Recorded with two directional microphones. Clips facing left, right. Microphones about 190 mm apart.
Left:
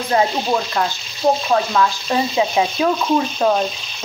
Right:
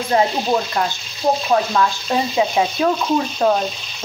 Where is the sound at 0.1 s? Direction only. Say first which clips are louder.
Even; 20° right (ahead or behind).